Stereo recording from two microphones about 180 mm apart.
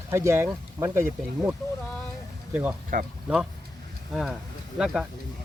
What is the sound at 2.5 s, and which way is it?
Speech, 10° right (ahead or behind).